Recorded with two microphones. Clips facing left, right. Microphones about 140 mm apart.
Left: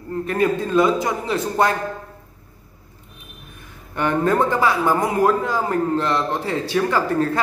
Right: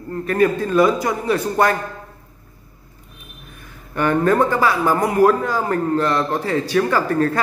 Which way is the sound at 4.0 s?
20° left (ahead or behind).